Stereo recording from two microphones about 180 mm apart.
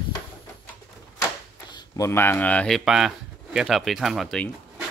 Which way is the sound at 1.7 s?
15° left (ahead or behind).